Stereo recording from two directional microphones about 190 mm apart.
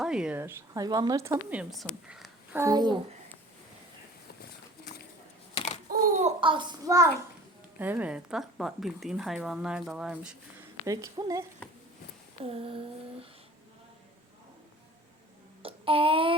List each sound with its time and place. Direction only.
0.0 s a woman's voice: 5° right (ahead or behind)
2.6 s child singing: 20° right (ahead or behind)
5.9 s babbling: 45° right (ahead or behind)
6.4 s child singing: 25° right (ahead or behind)
7.8 s speech: 10° right (ahead or behind)
10.8 s speech: 20° right (ahead or behind)
12.5 s a sound: 30° right (ahead or behind)
15.6 s a sound: 30° right (ahead or behind)